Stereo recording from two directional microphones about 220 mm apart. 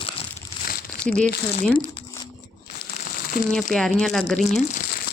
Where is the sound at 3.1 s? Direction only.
40° left (ahead or behind).